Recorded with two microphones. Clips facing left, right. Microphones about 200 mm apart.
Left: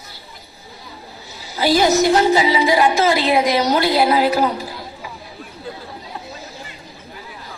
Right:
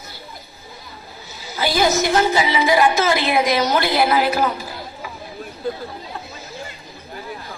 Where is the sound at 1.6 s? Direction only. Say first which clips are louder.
Left 4 dB; 35° left (ahead or behind).